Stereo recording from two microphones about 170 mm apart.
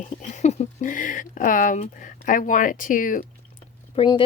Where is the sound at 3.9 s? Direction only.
30° left (ahead or behind).